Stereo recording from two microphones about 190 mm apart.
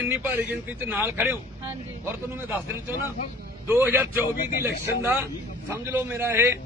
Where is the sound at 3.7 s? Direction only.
10° right (ahead or behind).